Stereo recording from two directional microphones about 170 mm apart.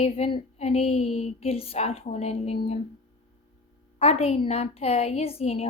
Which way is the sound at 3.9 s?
35° left (ahead or behind).